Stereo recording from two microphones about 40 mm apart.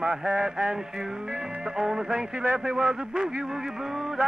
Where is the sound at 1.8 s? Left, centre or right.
Centre.